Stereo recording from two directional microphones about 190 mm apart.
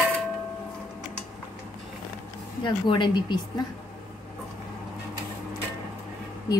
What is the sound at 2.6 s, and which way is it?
Speech, 25° left (ahead or behind).